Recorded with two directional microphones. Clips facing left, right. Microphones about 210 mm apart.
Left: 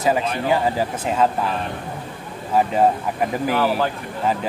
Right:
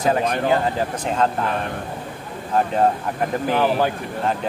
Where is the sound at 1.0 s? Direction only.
5° left (ahead or behind).